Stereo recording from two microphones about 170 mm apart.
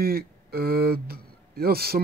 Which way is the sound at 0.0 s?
65° right (ahead or behind).